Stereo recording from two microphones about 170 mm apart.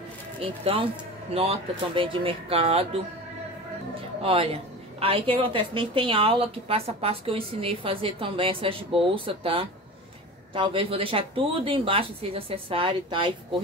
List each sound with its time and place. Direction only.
1.3 s a woman's voice: 35° right (ahead or behind)
4.2 s a woman's voice: 35° right (ahead or behind)